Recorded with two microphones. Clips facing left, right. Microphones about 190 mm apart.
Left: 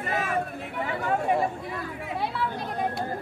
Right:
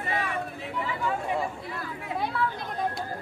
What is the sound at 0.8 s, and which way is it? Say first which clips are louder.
Speech: left 3 dB; 55° left (ahead or behind).